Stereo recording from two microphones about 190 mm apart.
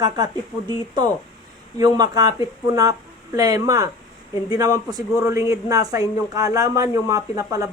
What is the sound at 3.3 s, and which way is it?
A man's voice, 20° right (ahead or behind).